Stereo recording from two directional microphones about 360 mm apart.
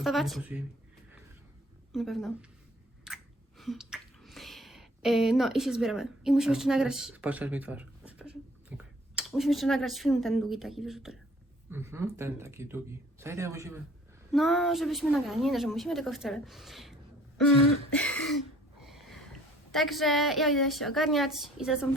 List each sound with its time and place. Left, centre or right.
0.0 s speech: centre
1.9 s speech: centre
3.1 s chewing: centre
3.6 s a sound: centre
8.8 s speech: centre
17.9 s throat clearing: centre
18.8 s a sound: centre
19.7 s speech: centre